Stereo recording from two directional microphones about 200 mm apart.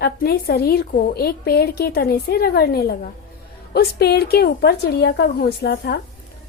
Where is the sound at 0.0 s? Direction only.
50° left (ahead or behind).